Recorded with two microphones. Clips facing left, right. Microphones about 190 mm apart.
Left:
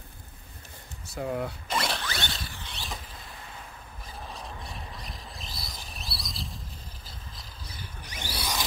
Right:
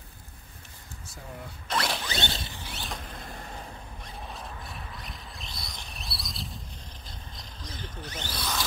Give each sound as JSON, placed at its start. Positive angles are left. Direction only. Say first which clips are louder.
{"t": 1.1, "sound": "speech", "louder": "left 12 dB", "side_deg": 75}
{"t": 1.7, "sound": "zipper", "louder": "right 2 dB", "side_deg": 5}
{"t": 2.0, "sound": "zipper", "louder": "right 2 dB", "side_deg": -20}
{"t": 2.6, "sound": "mechanisms", "louder": "right 1 dB", "side_deg": 0}
{"t": 3.2, "sound": "vehicle", "louder": "right 5 dB", "side_deg": -45}
{"t": 4.0, "sound": "a sound", "louder": "left 1 dB", "side_deg": 0}